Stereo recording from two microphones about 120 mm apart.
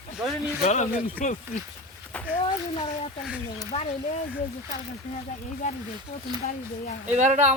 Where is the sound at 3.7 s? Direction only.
65° left (ahead or behind).